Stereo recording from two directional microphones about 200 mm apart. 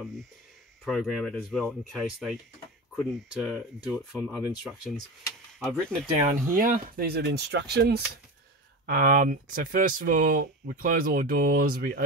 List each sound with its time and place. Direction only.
0.8 s speech: centre (ahead or behind)
6.1 s speech: 35° right (ahead or behind); by 8.0 s 55° right (ahead or behind)
8.8 s speech: 45° right (ahead or behind)